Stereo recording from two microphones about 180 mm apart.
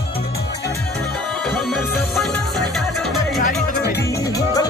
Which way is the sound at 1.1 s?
5° left (ahead or behind).